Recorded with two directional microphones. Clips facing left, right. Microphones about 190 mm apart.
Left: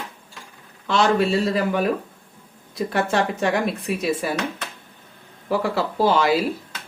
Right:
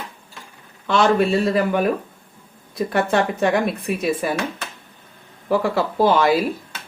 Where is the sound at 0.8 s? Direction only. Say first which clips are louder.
Right 2 dB; 55° right (ahead or behind).